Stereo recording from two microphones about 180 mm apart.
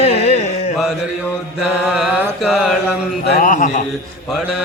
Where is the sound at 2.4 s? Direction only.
Centre (ahead or behind).